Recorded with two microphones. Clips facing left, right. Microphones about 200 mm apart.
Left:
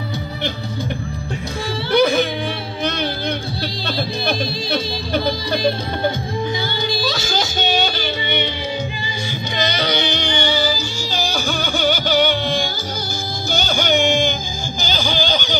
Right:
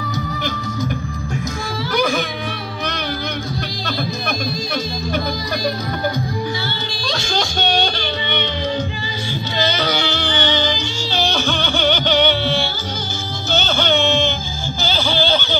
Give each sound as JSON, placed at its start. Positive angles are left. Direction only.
{"t": 1.9, "sound": "music", "side_deg": 30}
{"t": 6.9, "sound": "music", "side_deg": 5}
{"t": 9.6, "sound": "music", "side_deg": 15}